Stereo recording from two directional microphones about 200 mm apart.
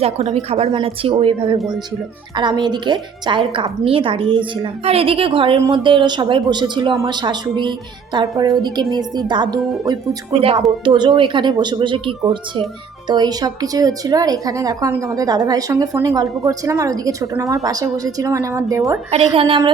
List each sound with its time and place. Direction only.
0.0 s a woman's voice: 35° right (ahead or behind)
1.5 s speech: 5° right (ahead or behind)
2.3 s a woman's voice: 20° right (ahead or behind)
19.1 s a woman's voice: 25° right (ahead or behind)